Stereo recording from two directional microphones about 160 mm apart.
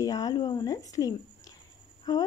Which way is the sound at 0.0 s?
25° left (ahead or behind).